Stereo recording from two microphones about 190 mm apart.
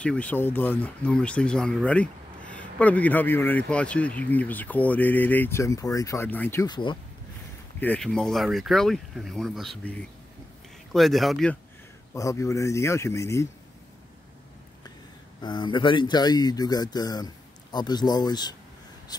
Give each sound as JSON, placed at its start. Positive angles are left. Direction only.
{"t": 0.0, "sound": "speech", "side_deg": 5}
{"t": 7.8, "sound": "speech", "side_deg": 5}
{"t": 12.1, "sound": "speech", "side_deg": 15}
{"t": 15.4, "sound": "speech", "side_deg": 25}